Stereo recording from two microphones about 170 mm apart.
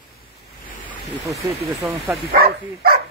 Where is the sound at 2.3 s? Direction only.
65° right (ahead or behind).